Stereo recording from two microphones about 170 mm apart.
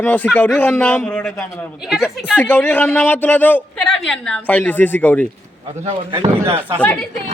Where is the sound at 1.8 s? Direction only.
5° right (ahead or behind).